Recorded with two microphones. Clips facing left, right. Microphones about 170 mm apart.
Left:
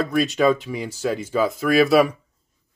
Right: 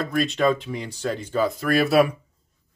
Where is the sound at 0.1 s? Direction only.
5° left (ahead or behind).